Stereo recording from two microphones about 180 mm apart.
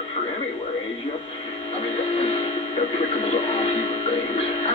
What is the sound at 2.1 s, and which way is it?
Music, 35° left (ahead or behind).